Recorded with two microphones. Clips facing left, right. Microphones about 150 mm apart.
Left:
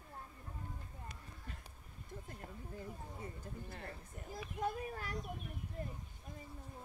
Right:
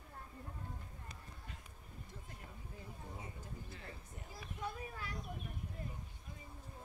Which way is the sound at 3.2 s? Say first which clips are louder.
Left 3 dB; 50° left (ahead or behind).